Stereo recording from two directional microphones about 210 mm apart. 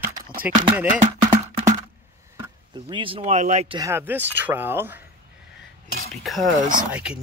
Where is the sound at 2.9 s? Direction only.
25° right (ahead or behind).